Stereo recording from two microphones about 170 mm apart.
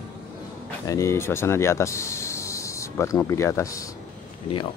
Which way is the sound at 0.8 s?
20° left (ahead or behind).